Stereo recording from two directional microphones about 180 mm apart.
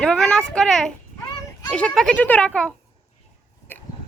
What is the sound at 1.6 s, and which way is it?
Speech, 5° left (ahead or behind).